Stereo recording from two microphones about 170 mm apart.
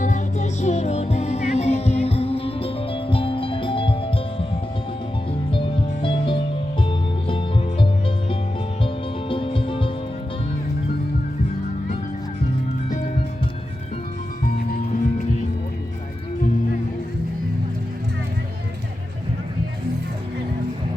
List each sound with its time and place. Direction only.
0.0 s music: 45° left (ahead or behind)
5.5 s music: 30° left (ahead or behind)
14.4 s music: 60° left (ahead or behind)